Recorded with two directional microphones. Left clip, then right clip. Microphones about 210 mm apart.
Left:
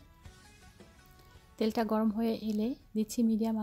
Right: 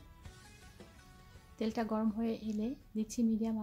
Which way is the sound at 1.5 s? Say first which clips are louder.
Left 6 dB; 35° left (ahead or behind).